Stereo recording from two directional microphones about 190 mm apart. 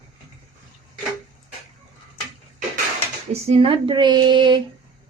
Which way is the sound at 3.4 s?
30° right (ahead or behind).